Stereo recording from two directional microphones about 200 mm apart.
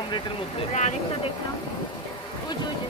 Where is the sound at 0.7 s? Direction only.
35° left (ahead or behind).